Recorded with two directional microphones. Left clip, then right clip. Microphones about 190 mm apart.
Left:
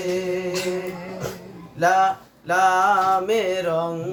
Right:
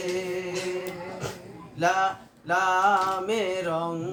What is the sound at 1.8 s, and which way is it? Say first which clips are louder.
Speech: left 6 dB; 25° left (ahead or behind).